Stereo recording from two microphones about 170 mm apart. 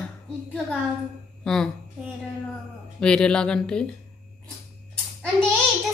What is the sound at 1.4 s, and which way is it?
Speech, centre (ahead or behind).